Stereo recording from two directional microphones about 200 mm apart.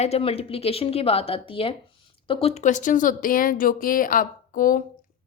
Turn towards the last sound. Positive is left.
turn(degrees=45)  # may be behind; listen again after turning